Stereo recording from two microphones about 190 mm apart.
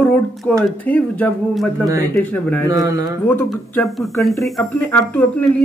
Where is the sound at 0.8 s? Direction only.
5° left (ahead or behind).